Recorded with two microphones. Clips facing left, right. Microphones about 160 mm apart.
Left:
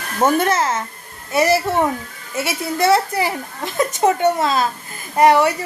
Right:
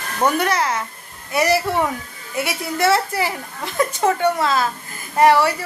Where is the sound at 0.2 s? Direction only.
25° left (ahead or behind).